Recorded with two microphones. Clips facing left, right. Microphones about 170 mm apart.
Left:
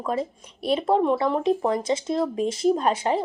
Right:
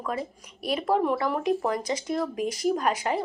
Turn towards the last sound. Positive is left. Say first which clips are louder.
# left 4 dB
turn(degrees=30)  # may be behind; listen again after turning